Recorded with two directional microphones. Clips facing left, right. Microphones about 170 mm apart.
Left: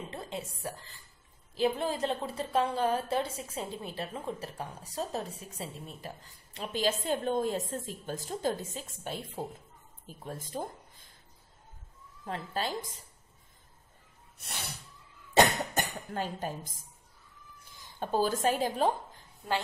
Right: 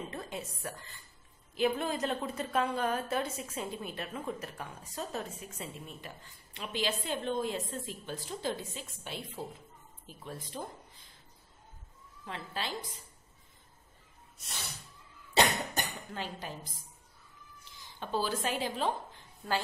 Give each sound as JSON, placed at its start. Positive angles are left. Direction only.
{"t": 0.1, "sound": "a woman's voice", "side_deg": 25}
{"t": 12.3, "sound": "a woman's voice", "side_deg": 45}
{"t": 14.4, "sound": "snort", "side_deg": 60}
{"t": 15.3, "sound": "a woman's voice", "side_deg": 50}